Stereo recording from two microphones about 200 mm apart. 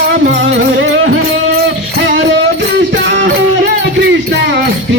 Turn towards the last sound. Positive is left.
turn(degrees=-65)  # may be behind; listen again after turning